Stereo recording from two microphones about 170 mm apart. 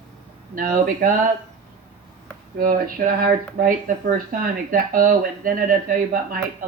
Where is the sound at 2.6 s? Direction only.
55° right (ahead or behind).